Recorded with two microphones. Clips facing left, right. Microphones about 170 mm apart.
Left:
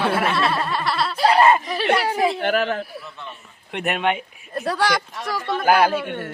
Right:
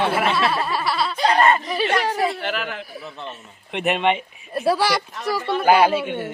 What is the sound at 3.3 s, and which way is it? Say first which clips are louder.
Speech: right 2 dB; centre (ahead or behind).